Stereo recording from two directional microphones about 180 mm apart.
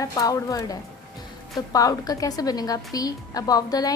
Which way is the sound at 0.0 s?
20° left (ahead or behind).